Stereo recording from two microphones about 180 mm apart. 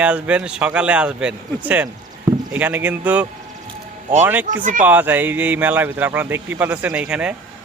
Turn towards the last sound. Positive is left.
turn(degrees=-5)  # may be behind; listen again after turning